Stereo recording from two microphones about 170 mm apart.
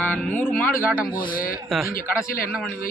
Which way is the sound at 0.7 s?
55° left (ahead or behind).